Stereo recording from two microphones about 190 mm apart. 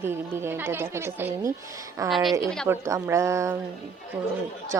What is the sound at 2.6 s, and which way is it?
Speech, 15° right (ahead or behind).